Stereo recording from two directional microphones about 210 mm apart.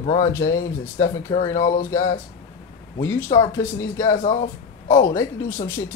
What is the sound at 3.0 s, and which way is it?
Speech, 15° left (ahead or behind).